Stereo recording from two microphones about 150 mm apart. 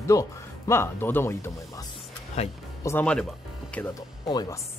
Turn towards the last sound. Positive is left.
turn(degrees=25)  # may be behind; listen again after turning